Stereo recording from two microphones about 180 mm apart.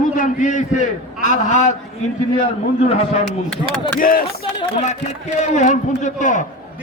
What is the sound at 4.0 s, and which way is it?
Speech, 50° left (ahead or behind).